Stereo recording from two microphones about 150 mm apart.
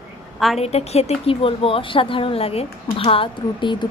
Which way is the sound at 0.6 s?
45° left (ahead or behind).